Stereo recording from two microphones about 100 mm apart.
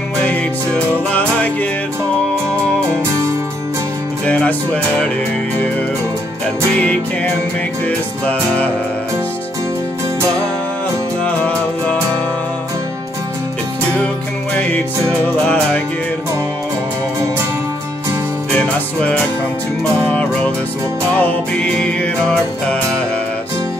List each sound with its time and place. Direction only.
1.1 s music: 15° left (ahead or behind)
4.3 s music: 15° left (ahead or behind)
7.8 s music: 15° left (ahead or behind)
11.2 s music: 15° left (ahead or behind)
15.4 s music: 15° left (ahead or behind)
20.1 s music: 15° left (ahead or behind)